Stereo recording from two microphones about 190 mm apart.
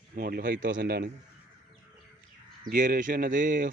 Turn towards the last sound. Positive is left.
turn(degrees=-45)  # may be behind; listen again after turning